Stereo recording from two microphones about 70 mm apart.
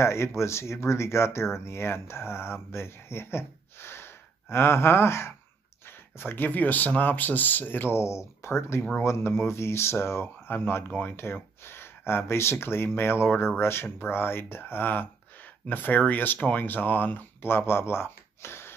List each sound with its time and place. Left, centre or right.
0.0 s speech: left
11.1 s speech: left